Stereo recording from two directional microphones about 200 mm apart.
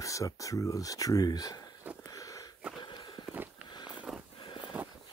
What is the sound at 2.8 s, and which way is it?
Walk, 20° left (ahead or behind).